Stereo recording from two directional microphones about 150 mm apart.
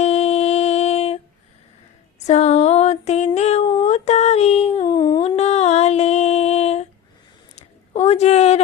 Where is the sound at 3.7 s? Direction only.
45° left (ahead or behind).